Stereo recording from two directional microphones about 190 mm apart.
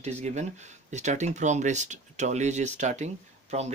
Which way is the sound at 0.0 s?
35° right (ahead or behind).